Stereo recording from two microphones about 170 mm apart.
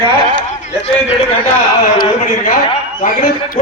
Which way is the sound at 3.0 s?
55° left (ahead or behind).